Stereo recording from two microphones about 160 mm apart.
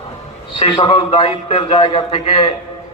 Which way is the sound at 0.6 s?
30° left (ahead or behind).